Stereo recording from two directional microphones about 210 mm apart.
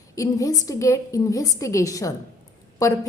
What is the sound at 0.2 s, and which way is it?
A woman's voice, 15° left (ahead or behind).